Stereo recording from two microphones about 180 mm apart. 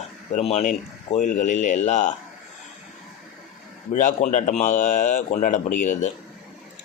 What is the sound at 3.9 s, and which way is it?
Speech, 45° left (ahead or behind).